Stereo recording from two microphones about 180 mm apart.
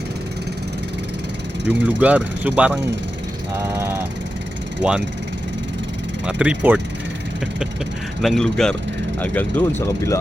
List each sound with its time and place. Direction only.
1.8 s speech: 10° right (ahead or behind)
3.5 s vehicle: 15° right (ahead or behind)
4.8 s speech: 5° right (ahead or behind)
6.2 s speech: 5° right (ahead or behind)
8.2 s speech: centre (ahead or behind)